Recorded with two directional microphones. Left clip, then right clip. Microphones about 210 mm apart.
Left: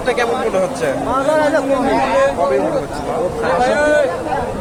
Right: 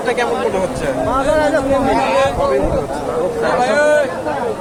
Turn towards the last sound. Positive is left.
turn(degrees=-50)  # may be behind; listen again after turning